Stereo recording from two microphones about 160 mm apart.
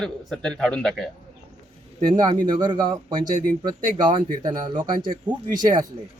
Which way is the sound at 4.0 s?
30° right (ahead or behind).